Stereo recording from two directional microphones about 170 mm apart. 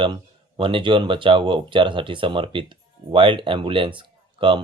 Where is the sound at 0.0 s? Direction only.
30° right (ahead or behind).